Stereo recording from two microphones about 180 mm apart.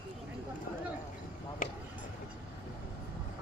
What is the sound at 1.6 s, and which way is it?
Vehicle, 45° left (ahead or behind).